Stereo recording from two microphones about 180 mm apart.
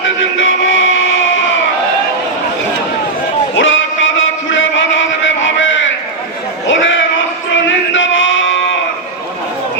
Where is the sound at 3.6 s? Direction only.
90° left.